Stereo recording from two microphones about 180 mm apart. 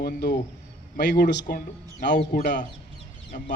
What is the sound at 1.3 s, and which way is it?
Speech, 55° left (ahead or behind).